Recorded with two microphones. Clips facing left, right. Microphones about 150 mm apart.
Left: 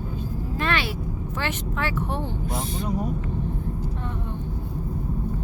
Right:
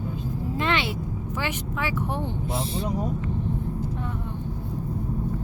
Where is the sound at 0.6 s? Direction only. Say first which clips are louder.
Even; 20° right (ahead or behind).